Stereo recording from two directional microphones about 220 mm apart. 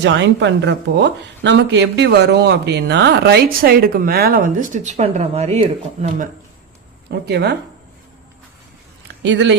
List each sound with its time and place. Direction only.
0.0 s speech: 55° right (ahead or behind); by 6.2 s 30° right (ahead or behind)
7.1 s speech: 50° right (ahead or behind)
9.2 s speech: 55° right (ahead or behind)